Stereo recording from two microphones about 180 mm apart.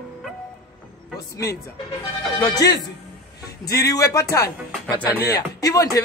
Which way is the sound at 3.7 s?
20° left (ahead or behind).